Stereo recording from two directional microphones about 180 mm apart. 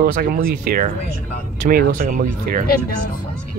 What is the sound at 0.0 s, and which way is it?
Speech, 55° right (ahead or behind).